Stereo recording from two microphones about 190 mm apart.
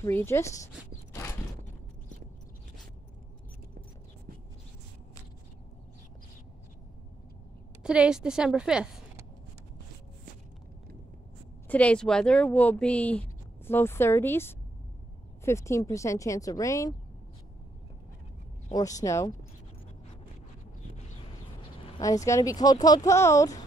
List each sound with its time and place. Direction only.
0.0 s speech: 15° left (ahead or behind)
7.8 s a woman's voice: 5° right (ahead or behind)
11.6 s speech: 5° left (ahead or behind)
18.7 s speech: 20° left (ahead or behind)
22.0 s speech: 15° left (ahead or behind)